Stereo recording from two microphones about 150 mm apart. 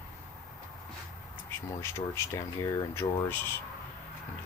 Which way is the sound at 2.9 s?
15° left (ahead or behind).